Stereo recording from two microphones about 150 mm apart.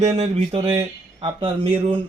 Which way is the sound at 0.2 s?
40° right (ahead or behind).